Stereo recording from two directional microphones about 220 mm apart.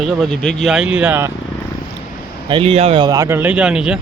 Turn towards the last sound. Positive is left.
turn(degrees=-5)  # may be behind; listen again after turning